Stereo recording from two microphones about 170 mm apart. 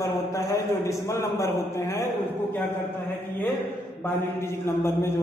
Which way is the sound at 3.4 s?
10° left (ahead or behind).